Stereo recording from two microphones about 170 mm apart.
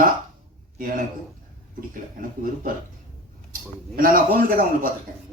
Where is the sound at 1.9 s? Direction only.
55° right (ahead or behind).